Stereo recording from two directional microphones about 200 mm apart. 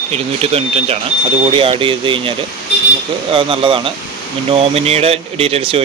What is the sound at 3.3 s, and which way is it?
Speech, 25° right (ahead or behind).